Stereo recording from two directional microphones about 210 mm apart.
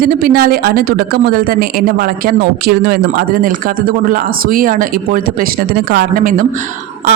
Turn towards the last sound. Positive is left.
turn(degrees=-40)  # may be behind; listen again after turning